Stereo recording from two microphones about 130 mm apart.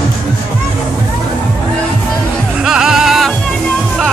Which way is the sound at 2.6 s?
5° right (ahead or behind).